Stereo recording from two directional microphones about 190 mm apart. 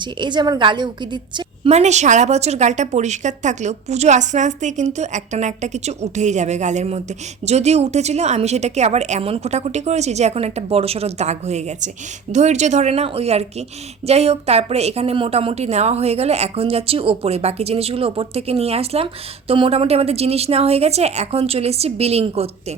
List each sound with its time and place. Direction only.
0.0 s a woman's voice: 25° right (ahead or behind)
1.7 s a woman's voice: 35° right (ahead or behind)